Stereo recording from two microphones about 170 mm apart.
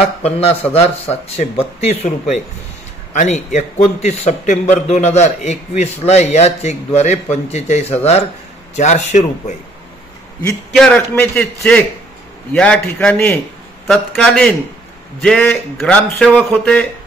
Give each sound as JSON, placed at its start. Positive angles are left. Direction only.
{"t": 0.2, "sound": "a man's voice", "side_deg": 35}
{"t": 10.5, "sound": "a man's voice", "side_deg": 5}